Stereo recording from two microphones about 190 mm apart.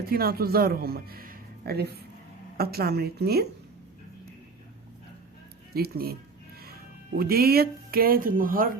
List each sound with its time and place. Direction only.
0.1 s a man's voice: 50° right (ahead or behind)
5.7 s speech: 55° right (ahead or behind)